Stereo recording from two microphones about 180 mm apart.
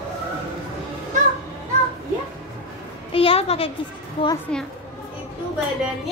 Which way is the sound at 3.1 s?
30° left (ahead or behind).